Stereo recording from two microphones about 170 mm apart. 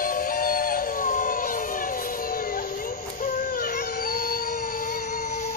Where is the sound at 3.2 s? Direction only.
55° left (ahead or behind).